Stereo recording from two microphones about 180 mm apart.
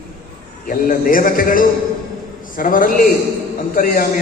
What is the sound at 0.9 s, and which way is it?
A man's voice, 50° left (ahead or behind).